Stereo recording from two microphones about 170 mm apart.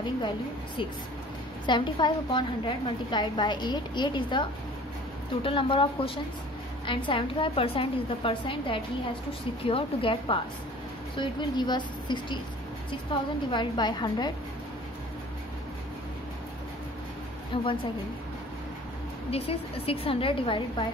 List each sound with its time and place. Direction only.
1.7 s a woman's voice: 25° left (ahead or behind)
17.5 s a woman's voice: 30° left (ahead or behind)
19.3 s a woman's voice: 35° left (ahead or behind)